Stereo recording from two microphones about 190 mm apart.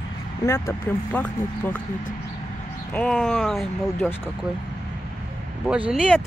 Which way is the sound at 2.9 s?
5° left (ahead or behind).